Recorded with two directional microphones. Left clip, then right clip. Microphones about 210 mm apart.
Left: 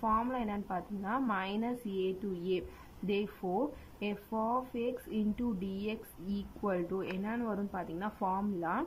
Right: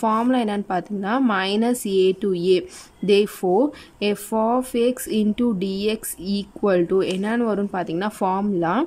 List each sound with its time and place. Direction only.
0.0 s speech: 30° right (ahead or behind)
3.4 s speech: 45° right (ahead or behind)